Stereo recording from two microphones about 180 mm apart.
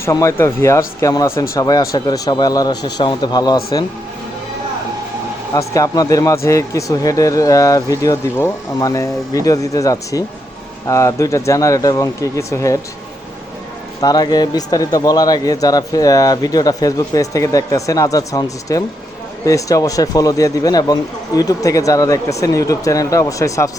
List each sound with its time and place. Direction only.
0.0 s speech: 15° left (ahead or behind)
5.5 s speech: 20° left (ahead or behind)
14.0 s speech: 20° left (ahead or behind)